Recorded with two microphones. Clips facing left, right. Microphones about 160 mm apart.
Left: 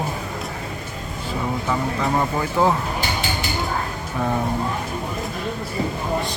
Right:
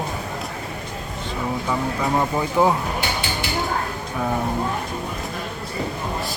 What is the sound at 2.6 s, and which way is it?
Speech, 15° right (ahead or behind).